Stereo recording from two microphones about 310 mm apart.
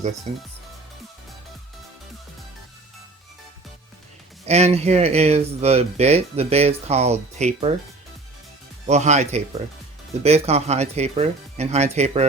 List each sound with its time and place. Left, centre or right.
0.3 s speech: right
4.4 s speech: right
8.9 s speech: right